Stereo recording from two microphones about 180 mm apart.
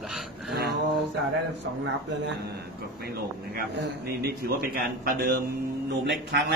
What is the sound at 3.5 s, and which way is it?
A man's voice, 60° right (ahead or behind).